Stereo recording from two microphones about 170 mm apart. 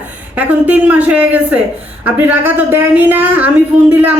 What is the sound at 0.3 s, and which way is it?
A woman's voice, 10° right (ahead or behind).